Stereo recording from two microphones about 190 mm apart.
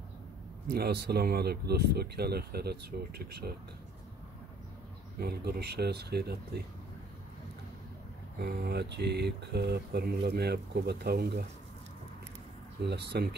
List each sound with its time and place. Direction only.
0.7 s speech: 55° right (ahead or behind)
5.2 s speech: 55° right (ahead or behind)
8.4 s speech: 55° right (ahead or behind)
12.8 s speech: 60° right (ahead or behind)